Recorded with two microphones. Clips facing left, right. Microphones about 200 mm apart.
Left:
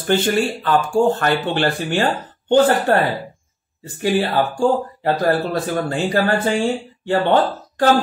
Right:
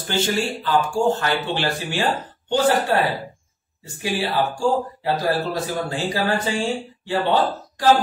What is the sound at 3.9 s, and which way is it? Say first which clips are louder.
Speech: left 5 dB; 60° left (ahead or behind).